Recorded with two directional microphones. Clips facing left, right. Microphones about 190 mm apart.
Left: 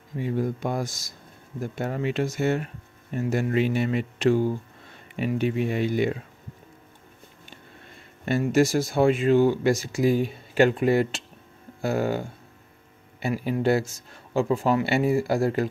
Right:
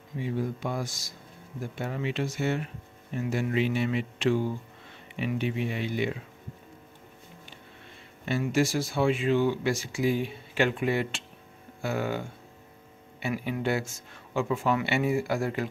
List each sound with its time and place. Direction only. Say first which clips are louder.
0.2 s speech: left 4 dB; 45° left (ahead or behind)
8.3 s speech: left 5 dB; 45° left (ahead or behind)